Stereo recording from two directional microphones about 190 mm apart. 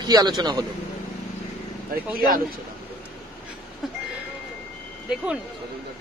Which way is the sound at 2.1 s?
50° right (ahead or behind).